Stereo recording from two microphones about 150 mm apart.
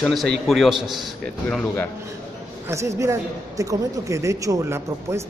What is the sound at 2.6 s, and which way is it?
A man's voice, 20° right (ahead or behind).